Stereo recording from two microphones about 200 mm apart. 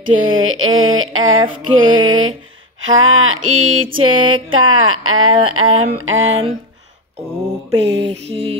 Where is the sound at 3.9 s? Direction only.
90° right.